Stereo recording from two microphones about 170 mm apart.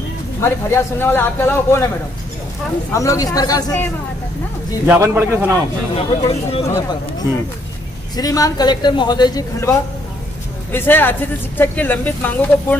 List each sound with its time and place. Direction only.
0.4 s speech: 15° left (ahead or behind)
2.9 s a man's voice: 20° left (ahead or behind)
4.8 s a man's voice: 15° right (ahead or behind)
5.9 s speech: 35° left (ahead or behind)
8.2 s a man's voice: 20° left (ahead or behind)